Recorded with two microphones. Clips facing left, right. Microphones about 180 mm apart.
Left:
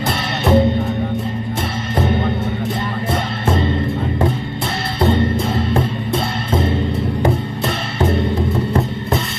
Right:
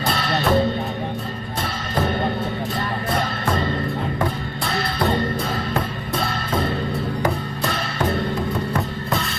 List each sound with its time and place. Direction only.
0.1 s music: 20° left (ahead or behind)
3.1 s music: 25° left (ahead or behind)